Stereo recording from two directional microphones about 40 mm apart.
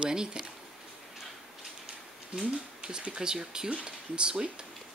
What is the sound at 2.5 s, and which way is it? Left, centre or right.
Speech, right.